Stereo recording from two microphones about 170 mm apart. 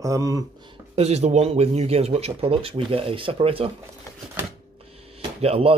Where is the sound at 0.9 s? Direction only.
40° right (ahead or behind).